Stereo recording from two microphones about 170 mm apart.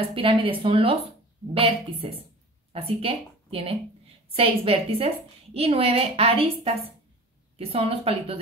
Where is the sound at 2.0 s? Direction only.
35° right (ahead or behind).